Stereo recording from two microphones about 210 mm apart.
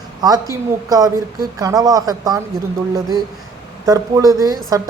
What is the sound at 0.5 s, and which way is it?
Speech, 15° right (ahead or behind).